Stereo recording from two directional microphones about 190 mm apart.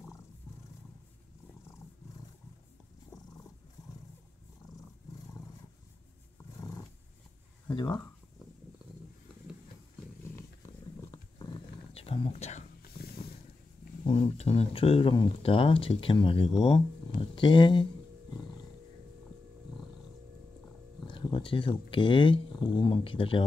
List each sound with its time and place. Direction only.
6.6 s roar: 15° left (ahead or behind)
7.6 s speech: 20° left (ahead or behind)
11.0 s a sound: 20° left (ahead or behind); by 12.6 s 35° left (ahead or behind)
14.0 s speech: 35° left (ahead or behind)
21.1 s speech: 25° left (ahead or behind)